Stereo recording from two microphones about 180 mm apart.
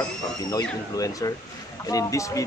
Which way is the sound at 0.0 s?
20° left (ahead or behind).